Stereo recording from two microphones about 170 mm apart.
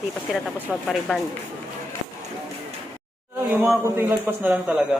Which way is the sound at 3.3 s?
10° right (ahead or behind).